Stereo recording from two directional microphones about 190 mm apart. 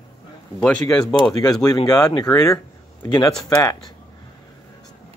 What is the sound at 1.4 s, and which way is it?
Speech, 20° left (ahead or behind).